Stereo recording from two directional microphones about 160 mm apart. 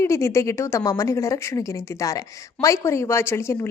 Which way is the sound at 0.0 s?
15° left (ahead or behind).